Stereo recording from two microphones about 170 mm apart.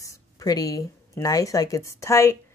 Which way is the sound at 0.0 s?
20° left (ahead or behind).